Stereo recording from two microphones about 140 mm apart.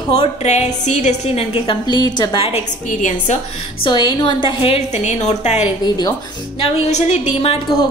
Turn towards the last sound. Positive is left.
turn(degrees=50)  # may be behind; listen again after turning